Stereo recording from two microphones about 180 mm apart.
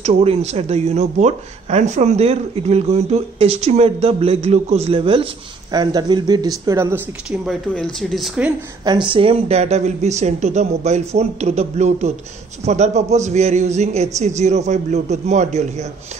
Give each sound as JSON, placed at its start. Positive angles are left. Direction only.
{"t": 0.0, "sound": "speech", "side_deg": -35}
{"t": 7.2, "sound": "speech", "side_deg": 0}
{"t": 8.8, "sound": "speech", "side_deg": -25}